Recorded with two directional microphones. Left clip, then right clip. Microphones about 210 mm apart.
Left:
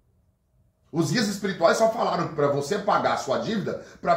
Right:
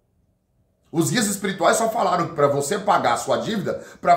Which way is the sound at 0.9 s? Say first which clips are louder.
Right 3 dB; 15° right (ahead or behind).